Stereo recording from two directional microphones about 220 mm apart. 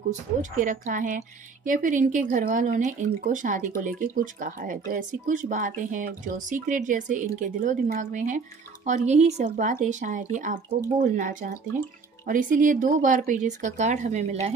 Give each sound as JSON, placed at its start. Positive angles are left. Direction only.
{"t": 0.4, "sound": "speech", "side_deg": -35}